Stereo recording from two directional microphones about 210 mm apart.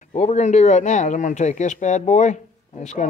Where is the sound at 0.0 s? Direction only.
35° left (ahead or behind).